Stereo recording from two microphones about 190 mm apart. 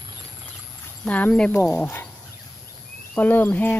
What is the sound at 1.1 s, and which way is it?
Speech, 5° left (ahead or behind).